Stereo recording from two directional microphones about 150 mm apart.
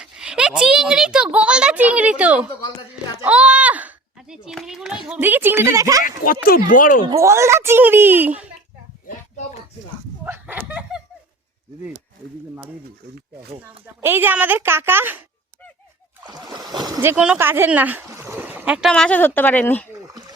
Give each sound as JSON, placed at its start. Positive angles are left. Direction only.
{"t": 0.0, "sound": "a woman's voice", "side_deg": -5}
{"t": 3.2, "sound": "children playing", "side_deg": -5}
{"t": 5.0, "sound": "speech", "side_deg": -10}
{"t": 6.1, "sound": "speech", "side_deg": 75}
{"t": 6.7, "sound": "speech", "side_deg": 65}
{"t": 7.1, "sound": "speech", "side_deg": -20}
{"t": 10.2, "sound": "a sound", "side_deg": -15}
{"t": 13.8, "sound": "speech", "side_deg": -15}
{"t": 16.2, "sound": "speech", "side_deg": -25}
{"t": 18.9, "sound": "a woman's voice", "side_deg": 5}